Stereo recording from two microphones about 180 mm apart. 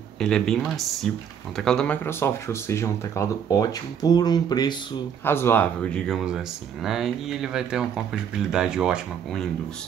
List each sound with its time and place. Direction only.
0.2 s speech: 5° left (ahead or behind)